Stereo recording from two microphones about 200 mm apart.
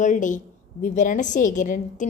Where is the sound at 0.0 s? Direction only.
40° left (ahead or behind).